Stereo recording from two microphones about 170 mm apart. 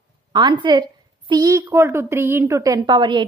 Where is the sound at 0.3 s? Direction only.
25° right (ahead or behind).